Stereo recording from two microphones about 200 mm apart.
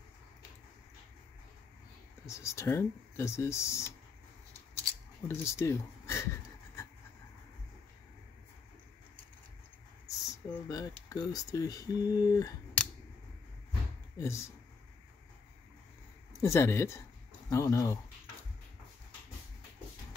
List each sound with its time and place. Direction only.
2.2 s speech: 15° left (ahead or behind)
5.3 s speech: 15° left (ahead or behind)
10.0 s speech: 15° left (ahead or behind)
14.1 s speech: 15° left (ahead or behind)
16.3 s speech: 15° left (ahead or behind)